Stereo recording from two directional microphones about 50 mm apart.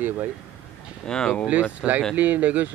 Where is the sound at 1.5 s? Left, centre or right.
Right.